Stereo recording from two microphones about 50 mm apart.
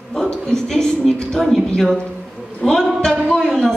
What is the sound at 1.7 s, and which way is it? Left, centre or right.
Speech, centre.